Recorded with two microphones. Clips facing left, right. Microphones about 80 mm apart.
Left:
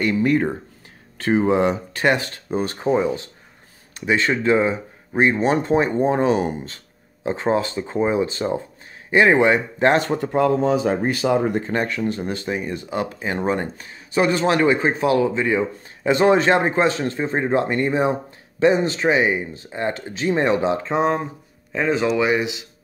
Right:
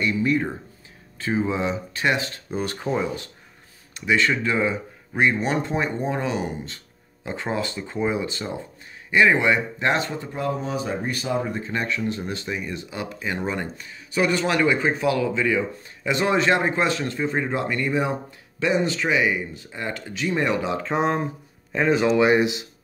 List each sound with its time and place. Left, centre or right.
0.0 s speech: left
1.1 s speech: left
2.6 s speech: left
3.9 s speech: left
7.2 s speech: left
10.0 s speech: left
11.6 s speech: left
20.9 s speech: centre
22.2 s speech: right